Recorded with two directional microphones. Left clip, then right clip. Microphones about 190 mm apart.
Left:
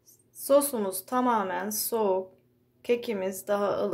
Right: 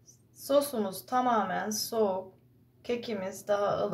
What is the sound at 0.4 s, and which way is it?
Speech, 40° left (ahead or behind).